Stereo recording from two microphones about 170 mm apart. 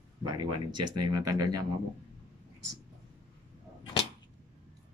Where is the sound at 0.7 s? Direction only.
25° right (ahead or behind).